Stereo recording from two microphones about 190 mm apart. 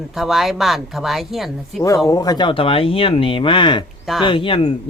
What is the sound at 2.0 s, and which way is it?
Speech, 20° left (ahead or behind).